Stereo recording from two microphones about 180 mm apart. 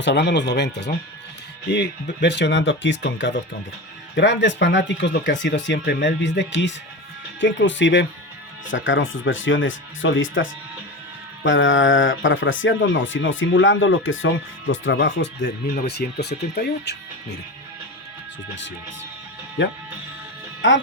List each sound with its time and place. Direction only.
0.0 s speech: 70° left (ahead or behind)
15.7 s speech: 60° left (ahead or behind)
20.6 s speech: 90° left